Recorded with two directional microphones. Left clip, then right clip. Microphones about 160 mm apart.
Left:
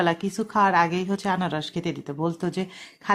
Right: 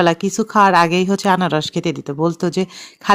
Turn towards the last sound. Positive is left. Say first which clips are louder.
# right 9 dB
turn(degrees=-50)  # may be behind; listen again after turning